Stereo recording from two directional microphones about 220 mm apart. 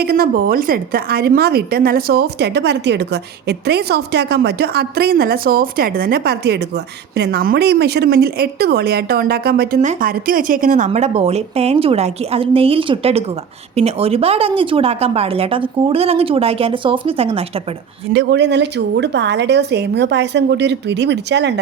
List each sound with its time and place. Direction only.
0.0 s a woman's voice: 45° right (ahead or behind); by 17.4 s 25° right (ahead or behind)
18.1 s a woman's voice: 50° right (ahead or behind)